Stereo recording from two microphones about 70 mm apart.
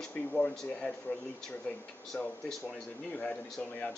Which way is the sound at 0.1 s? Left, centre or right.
Centre.